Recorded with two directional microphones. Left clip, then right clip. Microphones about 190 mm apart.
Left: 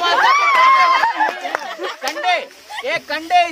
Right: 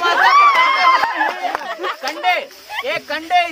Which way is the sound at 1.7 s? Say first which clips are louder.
Right 3 dB; 30° right (ahead or behind).